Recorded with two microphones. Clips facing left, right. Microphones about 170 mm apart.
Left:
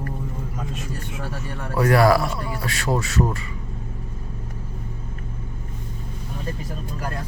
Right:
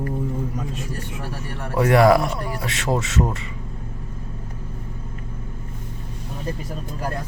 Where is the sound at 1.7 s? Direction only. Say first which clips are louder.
Right 2 dB; 20° right (ahead or behind).